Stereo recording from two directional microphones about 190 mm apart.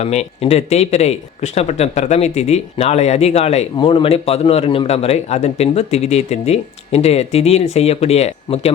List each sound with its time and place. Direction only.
0.0 s speech: 35° left (ahead or behind)